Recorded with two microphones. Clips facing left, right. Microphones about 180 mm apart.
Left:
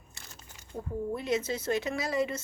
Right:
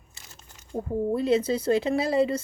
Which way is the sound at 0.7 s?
30° right (ahead or behind).